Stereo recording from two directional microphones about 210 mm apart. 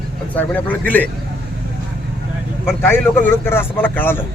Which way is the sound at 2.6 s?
10° left (ahead or behind).